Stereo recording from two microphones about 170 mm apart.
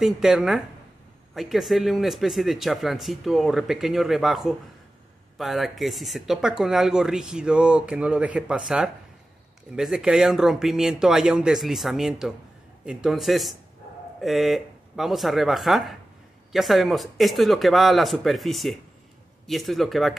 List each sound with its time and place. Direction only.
0.0 s speech: 5° right (ahead or behind)